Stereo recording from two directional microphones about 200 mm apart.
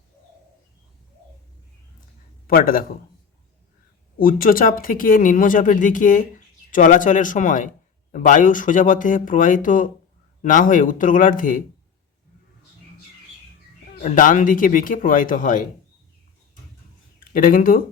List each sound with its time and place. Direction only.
2.5 s speech: 45° left (ahead or behind)
4.2 s speech: 45° left (ahead or behind)
14.0 s speech: 40° left (ahead or behind)
17.3 s speech: 45° left (ahead or behind)